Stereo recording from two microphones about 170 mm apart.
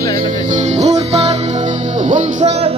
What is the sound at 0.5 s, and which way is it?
Music, 40° right (ahead or behind).